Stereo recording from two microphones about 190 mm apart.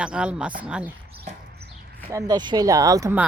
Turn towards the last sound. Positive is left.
turn(degrees=-15)  # may be behind; listen again after turning